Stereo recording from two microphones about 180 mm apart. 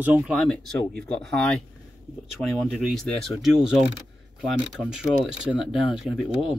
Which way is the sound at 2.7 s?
Centre (ahead or behind).